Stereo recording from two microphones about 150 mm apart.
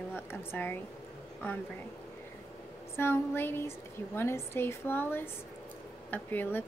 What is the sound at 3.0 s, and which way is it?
Speech, 15° left (ahead or behind).